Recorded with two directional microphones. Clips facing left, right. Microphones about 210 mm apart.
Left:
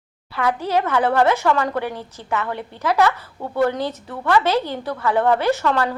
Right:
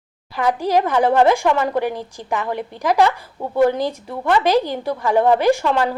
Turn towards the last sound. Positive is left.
turn(degrees=-15)  # may be behind; listen again after turning